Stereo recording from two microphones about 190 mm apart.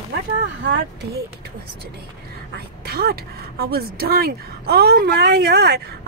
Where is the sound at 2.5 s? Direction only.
55° right (ahead or behind).